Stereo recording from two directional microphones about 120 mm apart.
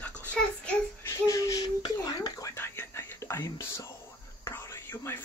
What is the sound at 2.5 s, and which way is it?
Whispering, 20° left (ahead or behind).